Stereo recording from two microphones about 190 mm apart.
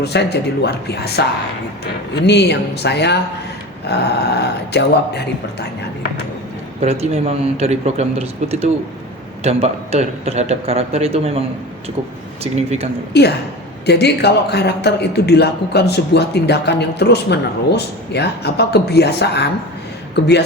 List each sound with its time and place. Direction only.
0.0 s a man's voice: 60° left (ahead or behind)
6.8 s speech: 30° right (ahead or behind)
12.4 s speech: 35° right (ahead or behind)
13.1 s a man's voice: 60° left (ahead or behind)